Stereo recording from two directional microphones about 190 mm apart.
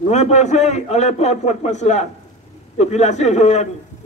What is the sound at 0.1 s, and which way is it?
A man's voice, 35° left (ahead or behind).